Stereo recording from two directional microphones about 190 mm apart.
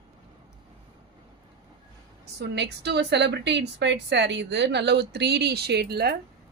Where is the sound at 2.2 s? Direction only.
60° right (ahead or behind).